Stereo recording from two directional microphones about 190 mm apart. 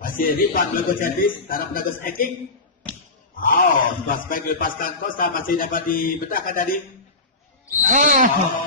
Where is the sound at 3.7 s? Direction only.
45° left (ahead or behind).